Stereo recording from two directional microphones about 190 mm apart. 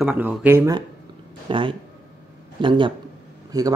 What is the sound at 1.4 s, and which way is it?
Speech, 25° right (ahead or behind).